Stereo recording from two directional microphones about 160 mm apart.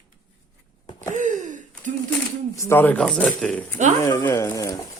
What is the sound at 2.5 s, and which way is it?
Speech, 15° left (ahead or behind).